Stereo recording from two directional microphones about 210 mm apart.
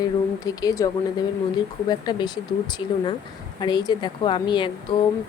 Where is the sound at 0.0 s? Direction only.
20° left (ahead or behind).